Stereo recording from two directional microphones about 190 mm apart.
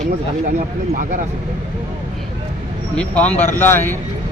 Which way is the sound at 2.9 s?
5° left (ahead or behind).